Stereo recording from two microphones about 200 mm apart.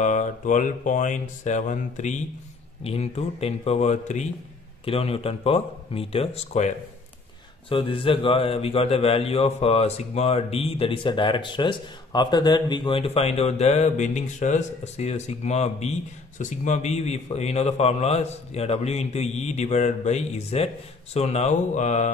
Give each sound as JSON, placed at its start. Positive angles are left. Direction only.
{"t": 0.0, "sound": "a man's voice", "side_deg": 40}
{"t": 7.7, "sound": "a man's voice", "side_deg": 25}